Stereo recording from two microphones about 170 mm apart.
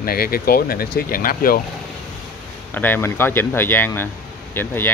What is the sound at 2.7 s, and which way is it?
Speech, 10° left (ahead or behind).